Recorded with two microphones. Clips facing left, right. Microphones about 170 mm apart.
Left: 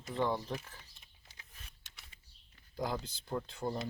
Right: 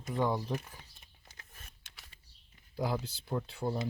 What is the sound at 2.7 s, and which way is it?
Speech, 5° right (ahead or behind).